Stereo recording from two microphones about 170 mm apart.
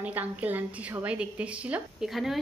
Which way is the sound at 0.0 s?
10° right (ahead or behind).